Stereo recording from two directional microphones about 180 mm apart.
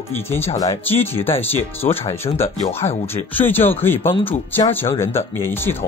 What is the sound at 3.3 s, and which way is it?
Speech, 10° left (ahead or behind).